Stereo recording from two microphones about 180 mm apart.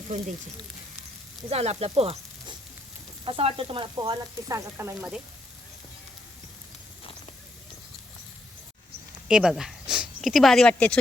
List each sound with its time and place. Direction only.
1.5 s sizzle: 35° right (ahead or behind); by 5.2 s 10° right (ahead or behind)
9.2 s speech: 5° right (ahead or behind)